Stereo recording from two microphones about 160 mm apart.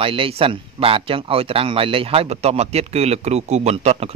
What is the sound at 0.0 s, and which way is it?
A man's voice, 35° right (ahead or behind).